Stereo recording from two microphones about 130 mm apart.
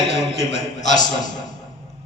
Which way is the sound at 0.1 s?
55° left (ahead or behind).